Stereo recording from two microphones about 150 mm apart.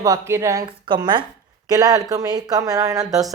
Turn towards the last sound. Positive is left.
turn(degrees=-25)  # may be behind; listen again after turning